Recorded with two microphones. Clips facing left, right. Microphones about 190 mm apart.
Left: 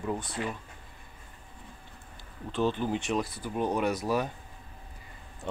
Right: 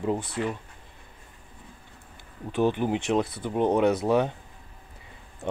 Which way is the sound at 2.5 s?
15° right (ahead or behind).